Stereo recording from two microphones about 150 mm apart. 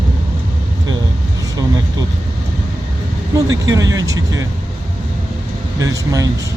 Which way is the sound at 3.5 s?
25° right (ahead or behind).